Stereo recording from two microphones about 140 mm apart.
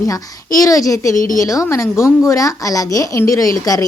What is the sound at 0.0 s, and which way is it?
A woman's voice, 25° left (ahead or behind).